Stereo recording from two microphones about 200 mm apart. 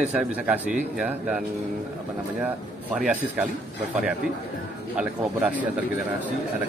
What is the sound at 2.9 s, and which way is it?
Speech, 5° right (ahead or behind).